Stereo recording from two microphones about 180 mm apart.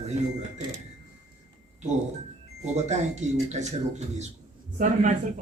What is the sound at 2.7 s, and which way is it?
A man's voice, 40° right (ahead or behind).